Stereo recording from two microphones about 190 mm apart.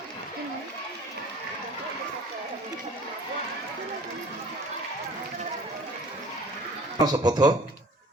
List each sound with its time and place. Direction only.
7.0 s speech: 20° right (ahead or behind)